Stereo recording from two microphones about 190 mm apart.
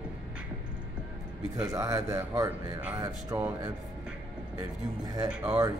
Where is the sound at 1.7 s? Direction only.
15° right (ahead or behind).